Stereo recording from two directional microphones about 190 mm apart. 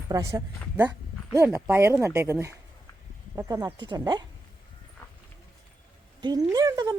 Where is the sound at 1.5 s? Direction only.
10° right (ahead or behind).